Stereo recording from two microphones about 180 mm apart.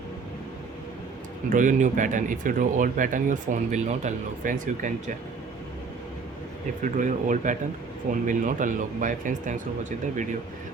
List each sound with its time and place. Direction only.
1.5 s speech: 45° right (ahead or behind)
6.8 s speech: 45° right (ahead or behind)